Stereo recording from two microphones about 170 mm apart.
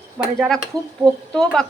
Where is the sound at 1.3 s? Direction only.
5° left (ahead or behind).